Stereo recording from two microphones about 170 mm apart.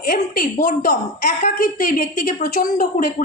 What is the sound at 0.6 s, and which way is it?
A woman's voice, 60° left (ahead or behind).